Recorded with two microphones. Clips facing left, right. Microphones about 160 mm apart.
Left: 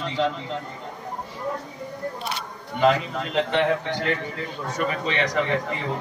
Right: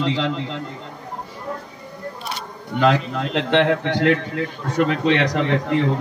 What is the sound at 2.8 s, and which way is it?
A man's voice, 90° right.